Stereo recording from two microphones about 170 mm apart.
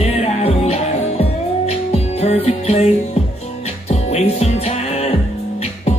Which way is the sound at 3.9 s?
40° left (ahead or behind).